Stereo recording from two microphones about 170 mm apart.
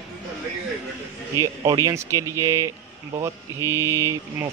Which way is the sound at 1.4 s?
20° right (ahead or behind).